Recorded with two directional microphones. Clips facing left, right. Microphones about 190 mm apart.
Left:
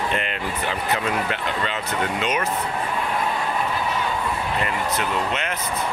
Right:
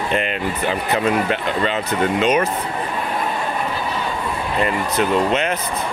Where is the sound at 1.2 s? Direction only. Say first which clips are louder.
Right 6 dB; 25° right (ahead or behind).